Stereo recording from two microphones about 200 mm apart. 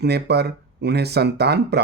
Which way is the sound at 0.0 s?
55° right (ahead or behind).